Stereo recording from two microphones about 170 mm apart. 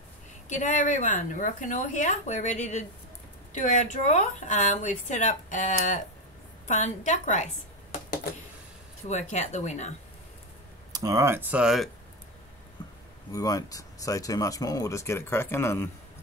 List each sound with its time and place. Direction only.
0.5 s speech: 45° left (ahead or behind)
9.1 s speech: 45° left (ahead or behind)
10.9 s speech: 20° right (ahead or behind); by 11.9 s centre (ahead or behind)
13.3 s speech: 20° left (ahead or behind)